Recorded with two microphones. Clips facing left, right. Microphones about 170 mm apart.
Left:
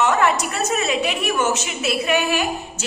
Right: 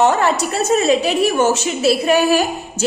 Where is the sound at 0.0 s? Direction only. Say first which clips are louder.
Right 3 dB; 30° right (ahead or behind).